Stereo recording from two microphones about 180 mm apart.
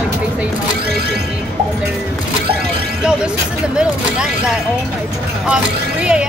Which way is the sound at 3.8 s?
5° right (ahead or behind).